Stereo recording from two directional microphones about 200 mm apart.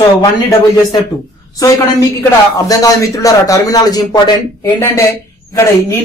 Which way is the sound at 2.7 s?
15° left (ahead or behind).